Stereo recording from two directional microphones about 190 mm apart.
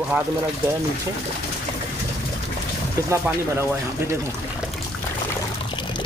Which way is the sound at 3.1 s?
15° right (ahead or behind).